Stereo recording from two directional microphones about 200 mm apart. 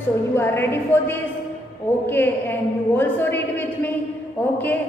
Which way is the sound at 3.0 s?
10° left (ahead or behind).